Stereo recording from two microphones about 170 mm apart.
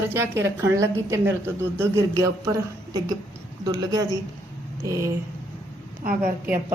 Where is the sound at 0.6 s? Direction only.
15° right (ahead or behind).